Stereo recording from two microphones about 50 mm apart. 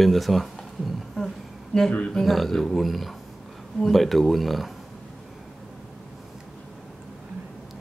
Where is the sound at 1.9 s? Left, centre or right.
Centre.